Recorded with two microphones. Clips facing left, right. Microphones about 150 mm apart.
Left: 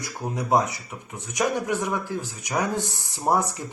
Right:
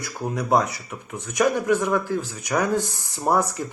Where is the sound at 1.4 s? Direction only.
20° left (ahead or behind).